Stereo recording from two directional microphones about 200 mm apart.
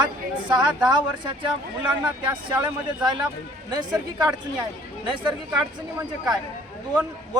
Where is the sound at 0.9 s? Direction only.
20° right (ahead or behind).